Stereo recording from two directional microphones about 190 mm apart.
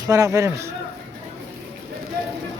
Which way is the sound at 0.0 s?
15° right (ahead or behind).